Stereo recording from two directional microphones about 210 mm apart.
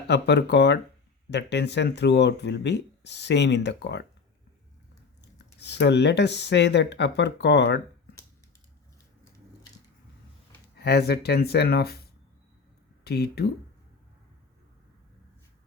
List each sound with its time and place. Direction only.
0.1 s speech: 55° left (ahead or behind)
5.2 s speech: 55° left (ahead or behind)
10.8 s speech: 50° left (ahead or behind)
13.1 s speech: 50° left (ahead or behind)